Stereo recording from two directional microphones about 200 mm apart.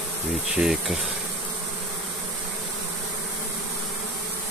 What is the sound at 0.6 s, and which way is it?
Speech, centre (ahead or behind).